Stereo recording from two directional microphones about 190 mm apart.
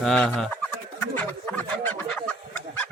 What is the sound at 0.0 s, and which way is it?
Speech, 5° left (ahead or behind).